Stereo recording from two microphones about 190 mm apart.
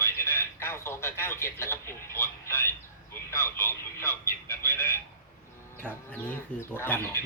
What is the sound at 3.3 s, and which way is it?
Speech, 15° left (ahead or behind).